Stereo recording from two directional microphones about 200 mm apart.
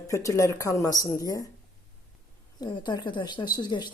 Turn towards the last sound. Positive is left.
turn(degrees=20)  # may be behind; listen again after turning